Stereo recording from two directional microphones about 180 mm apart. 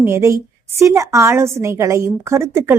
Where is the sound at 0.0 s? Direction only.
15° right (ahead or behind).